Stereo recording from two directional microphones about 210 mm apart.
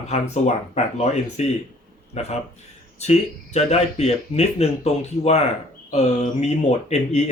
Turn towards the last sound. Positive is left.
turn(degrees=30)  # may be behind; listen again after turning